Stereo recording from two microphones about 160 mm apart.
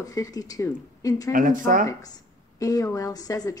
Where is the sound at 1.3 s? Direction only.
55° right (ahead or behind).